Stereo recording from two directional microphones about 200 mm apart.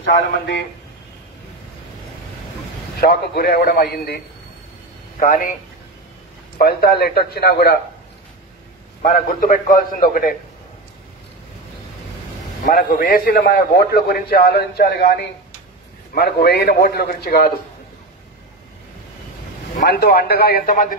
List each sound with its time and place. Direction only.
3.0 s a man's voice: 50° left (ahead or behind)
5.2 s a man's voice: 45° left (ahead or behind)
6.6 s a man's voice: 50° left (ahead or behind)
9.0 s a man's voice: 45° left (ahead or behind)
12.6 s a man's voice: 45° left (ahead or behind)
16.2 s a man's voice: 55° left (ahead or behind)
19.9 s a man's voice: 55° left (ahead or behind)